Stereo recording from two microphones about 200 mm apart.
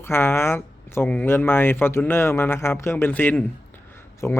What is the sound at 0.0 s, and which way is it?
Speech, 10° left (ahead or behind).